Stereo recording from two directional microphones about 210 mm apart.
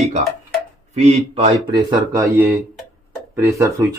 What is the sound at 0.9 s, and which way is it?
Speech, 30° right (ahead or behind).